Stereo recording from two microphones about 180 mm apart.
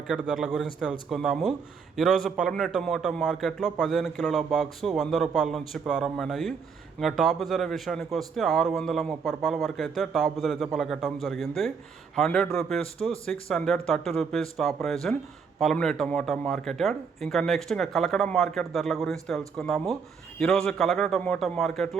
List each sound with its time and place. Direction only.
0.1 s a man's voice: 5° right (ahead or behind)